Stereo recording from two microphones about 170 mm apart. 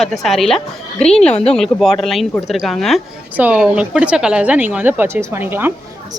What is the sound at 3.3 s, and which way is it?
Speech, 10° right (ahead or behind).